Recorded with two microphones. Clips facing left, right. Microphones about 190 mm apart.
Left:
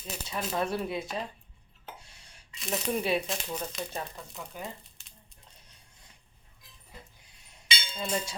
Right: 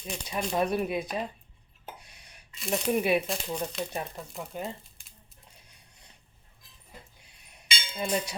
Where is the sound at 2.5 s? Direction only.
Centre (ahead or behind).